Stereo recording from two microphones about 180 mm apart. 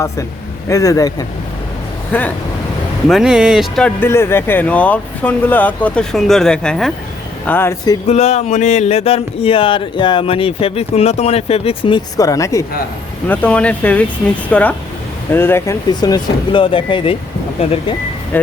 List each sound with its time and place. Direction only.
0.7 s speech: 20° left (ahead or behind)
2.1 s speech: 10° left (ahead or behind)
3.1 s speech: centre (ahead or behind); by 7.9 s 15° left (ahead or behind)
8.0 s speech: 35° left (ahead or behind)